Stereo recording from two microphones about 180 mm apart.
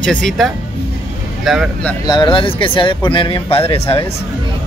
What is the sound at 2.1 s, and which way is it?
Speech, 25° left (ahead or behind).